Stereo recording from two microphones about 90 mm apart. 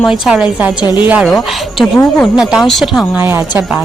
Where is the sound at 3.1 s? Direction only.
20° right (ahead or behind).